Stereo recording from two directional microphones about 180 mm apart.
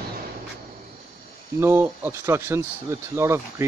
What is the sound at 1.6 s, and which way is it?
Speech, 15° right (ahead or behind).